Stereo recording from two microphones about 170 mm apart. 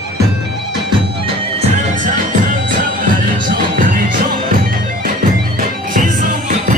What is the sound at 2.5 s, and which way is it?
Music, 50° right (ahead or behind).